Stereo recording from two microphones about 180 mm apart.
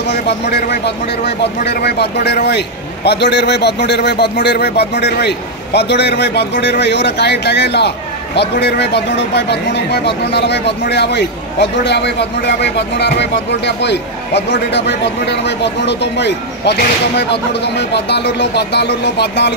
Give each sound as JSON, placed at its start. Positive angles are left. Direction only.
{"t": 0.1, "sound": "a man's voice", "side_deg": 65}